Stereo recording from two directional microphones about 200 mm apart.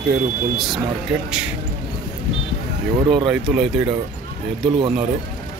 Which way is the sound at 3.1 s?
Centre (ahead or behind).